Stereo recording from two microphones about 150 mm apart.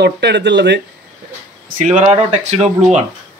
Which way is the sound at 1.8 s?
55° right (ahead or behind).